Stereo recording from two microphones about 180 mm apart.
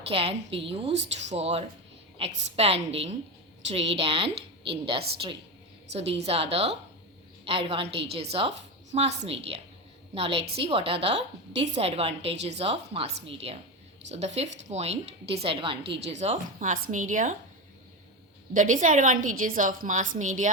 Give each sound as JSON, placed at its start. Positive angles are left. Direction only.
{"t": 0.1, "sound": "a woman's voice", "side_deg": -30}
{"t": 10.2, "sound": "a woman's voice", "side_deg": -30}
{"t": 18.5, "sound": "a woman's voice", "side_deg": -45}